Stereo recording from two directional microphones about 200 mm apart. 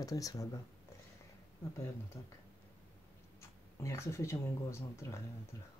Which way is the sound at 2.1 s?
15° left (ahead or behind).